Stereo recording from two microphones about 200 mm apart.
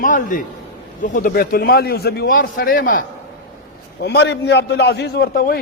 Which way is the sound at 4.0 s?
55° left (ahead or behind).